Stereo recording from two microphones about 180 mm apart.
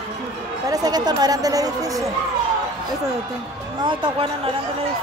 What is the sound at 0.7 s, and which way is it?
Speech, 20° right (ahead or behind).